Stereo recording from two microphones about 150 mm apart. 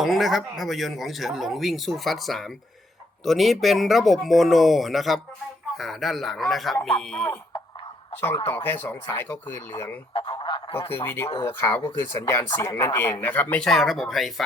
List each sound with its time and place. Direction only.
0.0 s speech: centre (ahead or behind)
8.4 s speech: 15° left (ahead or behind)
10.1 s a sound: 35° left (ahead or behind)
10.8 s speech: 15° left (ahead or behind); by 14.4 s centre (ahead or behind)